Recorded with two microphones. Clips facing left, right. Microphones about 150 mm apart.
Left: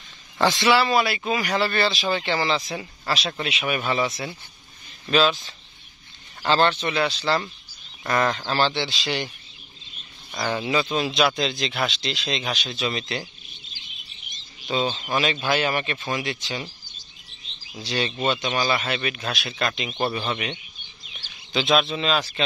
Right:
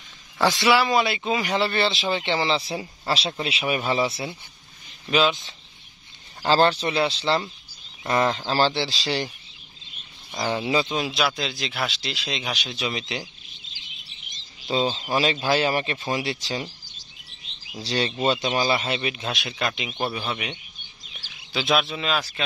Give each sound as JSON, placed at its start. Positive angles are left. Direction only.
{"t": 0.4, "sound": "speech", "side_deg": -10}
{"t": 5.0, "sound": "speech", "side_deg": -15}
{"t": 6.4, "sound": "speech", "side_deg": -35}
{"t": 10.3, "sound": "speech", "side_deg": -25}
{"t": 10.9, "sound": "speech", "side_deg": -5}
{"t": 13.5, "sound": "bird", "side_deg": -90}
{"t": 14.7, "sound": "speech", "side_deg": -30}
{"t": 17.7, "sound": "speech", "side_deg": -35}